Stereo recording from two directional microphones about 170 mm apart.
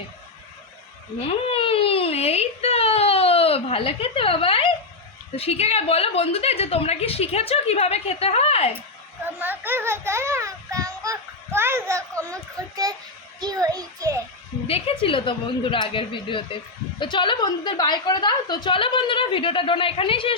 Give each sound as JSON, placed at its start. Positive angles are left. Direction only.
{"t": 1.5, "sound": "a sound", "side_deg": 35}
{"t": 5.4, "sound": "a woman's voice", "side_deg": 40}
{"t": 9.2, "sound": "children playing", "side_deg": -10}
{"t": 12.5, "sound": "a child's voice", "side_deg": -20}
{"t": 14.7, "sound": "a woman's voice", "side_deg": 35}